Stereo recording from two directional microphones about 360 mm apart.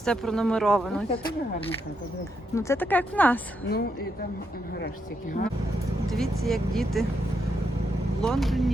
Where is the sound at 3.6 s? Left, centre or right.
Left.